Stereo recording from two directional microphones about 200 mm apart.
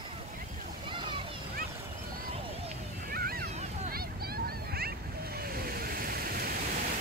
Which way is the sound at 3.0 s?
50° right (ahead or behind).